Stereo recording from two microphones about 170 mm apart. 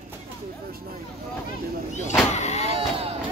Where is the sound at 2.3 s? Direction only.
40° left (ahead or behind).